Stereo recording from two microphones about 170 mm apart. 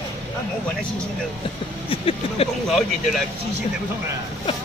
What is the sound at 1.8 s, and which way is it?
Speech, 35° left (ahead or behind).